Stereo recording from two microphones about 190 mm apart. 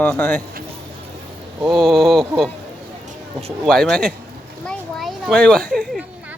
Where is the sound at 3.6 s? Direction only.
5° left (ahead or behind).